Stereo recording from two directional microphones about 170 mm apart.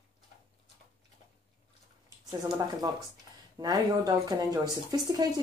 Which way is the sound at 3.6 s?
20° right (ahead or behind).